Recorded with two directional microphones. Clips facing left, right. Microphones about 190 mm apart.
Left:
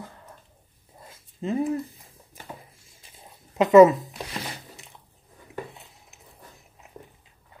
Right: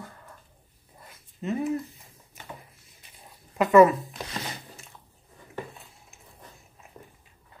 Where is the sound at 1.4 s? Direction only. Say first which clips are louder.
Left 2 dB; 30° left (ahead or behind).